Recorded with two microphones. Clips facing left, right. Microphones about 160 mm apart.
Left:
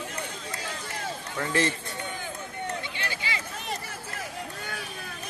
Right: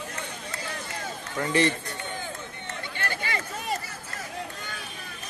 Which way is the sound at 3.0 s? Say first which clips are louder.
Right 3 dB; 50° right (ahead or behind).